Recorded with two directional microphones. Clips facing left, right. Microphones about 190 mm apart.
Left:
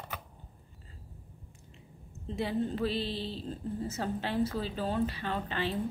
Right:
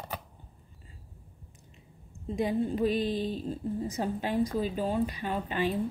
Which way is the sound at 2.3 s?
15° right (ahead or behind).